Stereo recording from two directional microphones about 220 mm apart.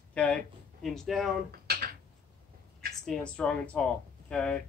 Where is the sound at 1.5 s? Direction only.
45° right (ahead or behind).